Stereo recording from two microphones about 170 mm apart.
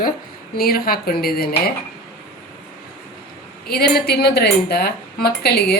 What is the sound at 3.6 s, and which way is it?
A woman's voice, 65° left (ahead or behind).